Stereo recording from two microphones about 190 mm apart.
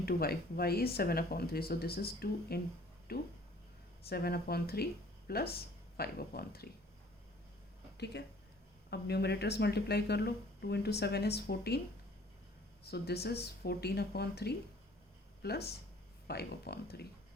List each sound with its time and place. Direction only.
0.0 s speech: 55° left (ahead or behind)
7.9 s speech: 60° left (ahead or behind)
12.8 s speech: 60° left (ahead or behind)